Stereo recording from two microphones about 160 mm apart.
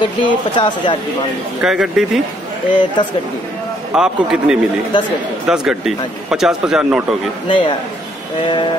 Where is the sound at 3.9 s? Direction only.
5° right (ahead or behind).